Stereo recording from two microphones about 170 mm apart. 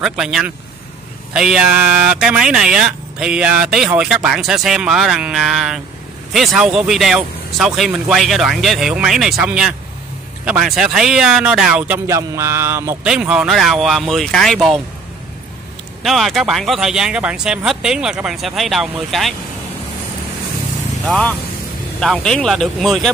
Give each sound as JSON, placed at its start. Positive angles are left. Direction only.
{"t": 0.0, "sound": "speech", "side_deg": -5}
{"t": 12.1, "sound": "a sound", "side_deg": -15}
{"t": 13.1, "sound": "speech", "side_deg": -5}
{"t": 16.0, "sound": "speech", "side_deg": 0}
{"t": 21.0, "sound": "speech", "side_deg": 5}